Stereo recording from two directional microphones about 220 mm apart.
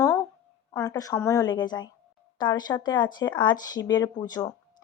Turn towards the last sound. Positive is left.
turn(degrees=15)  # may be behind; listen again after turning